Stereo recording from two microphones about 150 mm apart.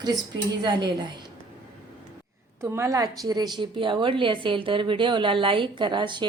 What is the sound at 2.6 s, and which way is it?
A woman's voice, 20° right (ahead or behind).